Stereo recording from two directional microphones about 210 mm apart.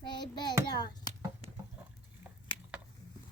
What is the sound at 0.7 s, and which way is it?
Speech, 20° left (ahead or behind).